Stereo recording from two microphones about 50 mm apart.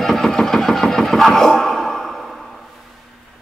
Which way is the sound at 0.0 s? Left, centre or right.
Centre.